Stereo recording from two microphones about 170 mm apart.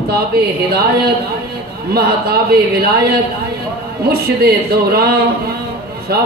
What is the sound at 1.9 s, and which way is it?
A man's voice, 65° right (ahead or behind).